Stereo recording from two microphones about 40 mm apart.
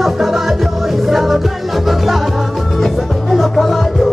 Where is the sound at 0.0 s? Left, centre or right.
Centre.